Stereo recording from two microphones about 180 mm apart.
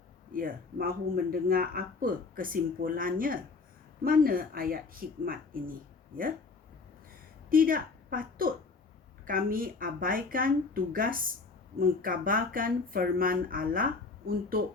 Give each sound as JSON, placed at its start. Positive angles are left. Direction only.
{"t": 0.3, "sound": "speech", "side_deg": -50}
{"t": 7.5, "sound": "a woman's voice", "side_deg": -50}